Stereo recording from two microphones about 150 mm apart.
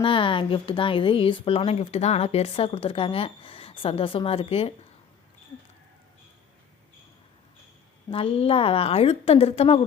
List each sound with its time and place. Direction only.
0.0 s speech: 35° left (ahead or behind)
8.1 s speech: 40° left (ahead or behind)